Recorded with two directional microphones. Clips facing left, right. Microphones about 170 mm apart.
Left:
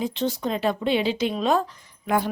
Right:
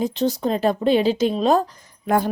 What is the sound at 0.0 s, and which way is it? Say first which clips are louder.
Speech: right 4 dB; 40° right (ahead or behind).